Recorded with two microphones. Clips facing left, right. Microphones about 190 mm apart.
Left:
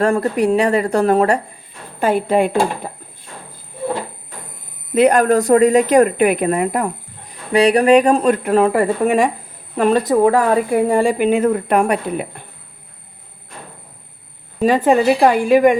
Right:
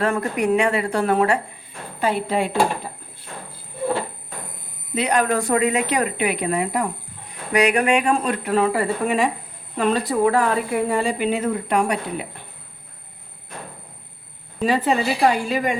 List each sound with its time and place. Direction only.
0.0 s speech: 35° left (ahead or behind); by 2.9 s 50° left (ahead or behind)
4.9 s speech: 50° left (ahead or behind)
7.5 s speech: 30° left (ahead or behind); by 12.3 s 55° left (ahead or behind)
14.6 s speech: 45° left (ahead or behind)